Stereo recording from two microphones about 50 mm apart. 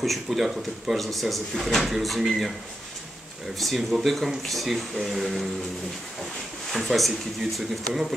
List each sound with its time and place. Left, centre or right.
0.0 s speech: centre
3.5 s speech: centre
6.7 s speech: centre